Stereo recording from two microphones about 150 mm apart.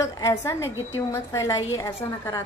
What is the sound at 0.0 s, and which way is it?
A woman's voice, 20° left (ahead or behind).